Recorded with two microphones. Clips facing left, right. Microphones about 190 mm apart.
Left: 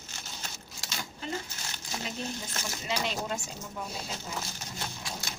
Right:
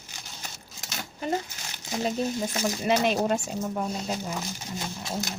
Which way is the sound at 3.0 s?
55° right (ahead or behind).